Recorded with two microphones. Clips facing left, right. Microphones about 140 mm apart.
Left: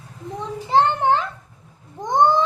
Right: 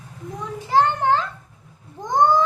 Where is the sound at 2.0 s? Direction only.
20° left (ahead or behind).